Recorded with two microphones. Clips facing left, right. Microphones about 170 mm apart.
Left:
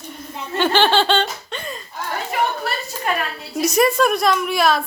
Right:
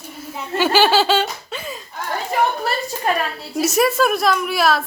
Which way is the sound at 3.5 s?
5° right (ahead or behind).